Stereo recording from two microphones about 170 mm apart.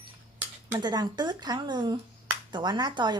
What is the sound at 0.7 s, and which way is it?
A woman's voice, 25° right (ahead or behind).